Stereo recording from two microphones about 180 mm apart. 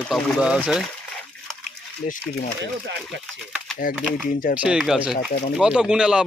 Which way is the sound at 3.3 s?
Centre (ahead or behind).